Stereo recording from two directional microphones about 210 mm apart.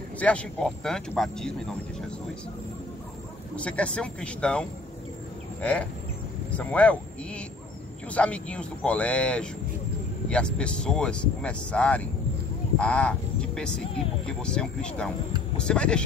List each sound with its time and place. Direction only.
0.2 s speech: 5° left (ahead or behind)
3.5 s speech: 5° left (ahead or behind)